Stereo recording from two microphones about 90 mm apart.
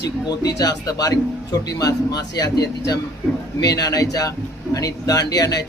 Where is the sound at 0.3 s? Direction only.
45° left (ahead or behind).